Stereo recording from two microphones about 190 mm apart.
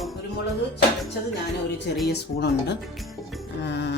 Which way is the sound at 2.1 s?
60° left (ahead or behind).